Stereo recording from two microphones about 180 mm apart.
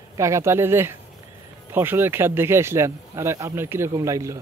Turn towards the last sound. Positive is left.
turn(degrees=-15)  # may be behind; listen again after turning